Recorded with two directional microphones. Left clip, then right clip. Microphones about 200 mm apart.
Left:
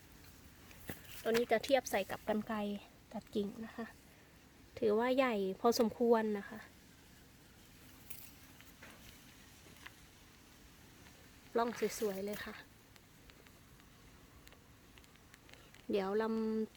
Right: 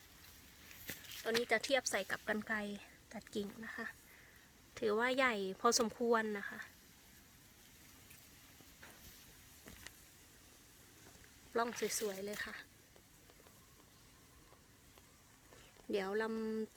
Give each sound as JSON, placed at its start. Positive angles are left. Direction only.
{"t": 0.9, "sound": "a sound", "side_deg": 25}
{"t": 1.2, "sound": "a woman's voice", "side_deg": 10}
{"t": 11.5, "sound": "speech", "side_deg": 0}
{"t": 15.9, "sound": "speech", "side_deg": 0}